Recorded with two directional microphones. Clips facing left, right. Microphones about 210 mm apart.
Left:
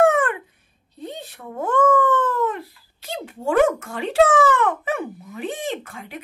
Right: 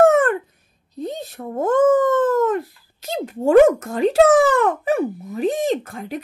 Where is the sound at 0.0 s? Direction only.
45° right (ahead or behind).